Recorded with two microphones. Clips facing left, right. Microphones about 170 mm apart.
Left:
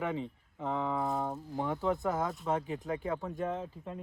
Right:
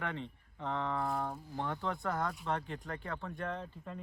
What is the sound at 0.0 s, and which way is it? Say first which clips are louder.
Speech: left 5 dB; 5° left (ahead or behind).